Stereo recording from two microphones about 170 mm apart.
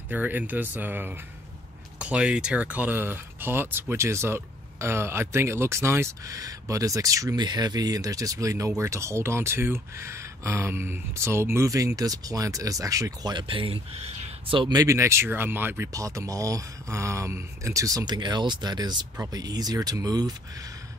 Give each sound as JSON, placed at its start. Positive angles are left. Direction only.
{"t": 0.1, "sound": "speech", "side_deg": -10}